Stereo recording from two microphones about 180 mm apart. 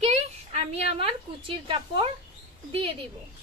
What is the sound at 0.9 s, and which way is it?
Speech, 30° right (ahead or behind).